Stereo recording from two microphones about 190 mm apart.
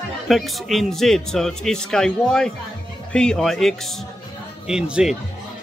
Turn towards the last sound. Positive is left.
turn(degrees=-5)  # may be behind; listen again after turning